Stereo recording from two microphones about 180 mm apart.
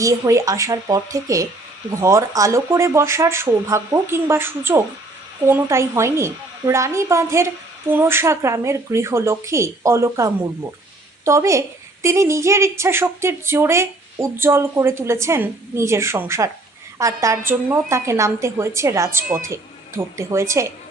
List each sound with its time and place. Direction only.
0.0 s a woman's voice: 20° right (ahead or behind)